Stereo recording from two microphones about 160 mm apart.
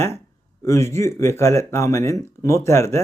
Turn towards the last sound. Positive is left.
turn(degrees=20)  # may be behind; listen again after turning